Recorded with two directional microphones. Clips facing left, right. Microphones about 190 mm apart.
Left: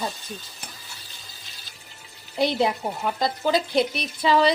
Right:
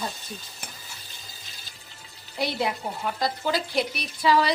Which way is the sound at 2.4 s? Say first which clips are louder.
Left 5 dB; 25° left (ahead or behind).